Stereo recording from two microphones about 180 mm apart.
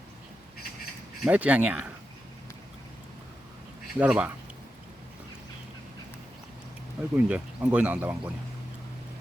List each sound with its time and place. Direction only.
1.2 s speech: 10° right (ahead or behind)
3.9 s speech: 5° right (ahead or behind)
7.2 s speech: 5° right (ahead or behind)